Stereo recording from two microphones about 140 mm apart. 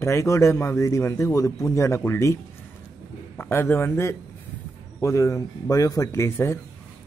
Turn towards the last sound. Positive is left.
turn(degrees=20)  # may be behind; listen again after turning